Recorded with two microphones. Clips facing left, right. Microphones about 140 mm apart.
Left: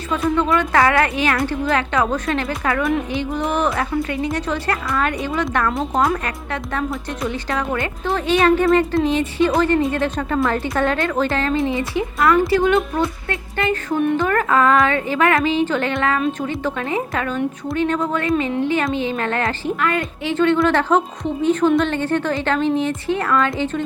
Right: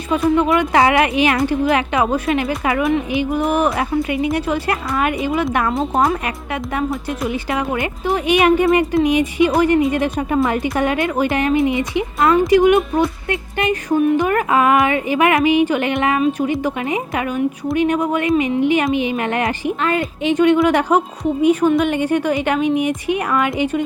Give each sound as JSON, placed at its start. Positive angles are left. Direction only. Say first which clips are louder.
{"t": 0.3, "sound": "speech", "louder": "right 1 dB", "side_deg": -15}